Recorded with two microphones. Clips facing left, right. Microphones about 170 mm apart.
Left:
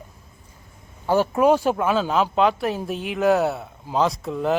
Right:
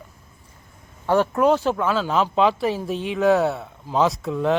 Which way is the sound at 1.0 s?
5° left (ahead or behind).